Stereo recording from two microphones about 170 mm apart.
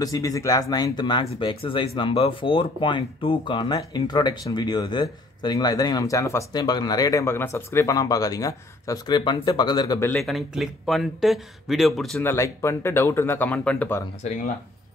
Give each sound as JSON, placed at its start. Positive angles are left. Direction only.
{"t": 0.0, "sound": "speech", "side_deg": 20}
{"t": 10.1, "sound": "speech", "side_deg": 0}
{"t": 12.2, "sound": "speech", "side_deg": 15}
{"t": 14.2, "sound": "speech", "side_deg": 45}